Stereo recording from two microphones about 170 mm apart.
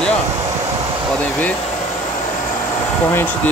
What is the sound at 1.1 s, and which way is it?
Speech, 10° left (ahead or behind).